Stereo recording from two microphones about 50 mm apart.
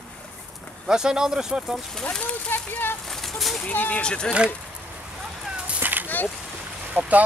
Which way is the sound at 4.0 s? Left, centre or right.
Centre.